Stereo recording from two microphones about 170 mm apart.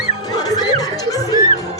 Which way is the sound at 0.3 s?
20° left (ahead or behind).